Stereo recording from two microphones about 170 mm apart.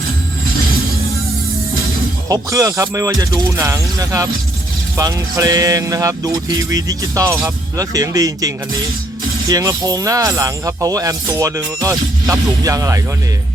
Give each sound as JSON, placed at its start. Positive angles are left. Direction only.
{"t": 2.3, "sound": "speech", "side_deg": -20}